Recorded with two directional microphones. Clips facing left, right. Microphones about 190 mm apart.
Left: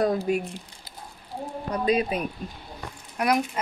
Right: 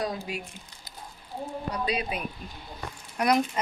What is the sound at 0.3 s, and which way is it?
Speech, 50° left (ahead or behind).